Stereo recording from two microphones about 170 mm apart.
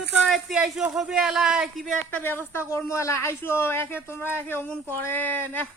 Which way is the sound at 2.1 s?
10° left (ahead or behind).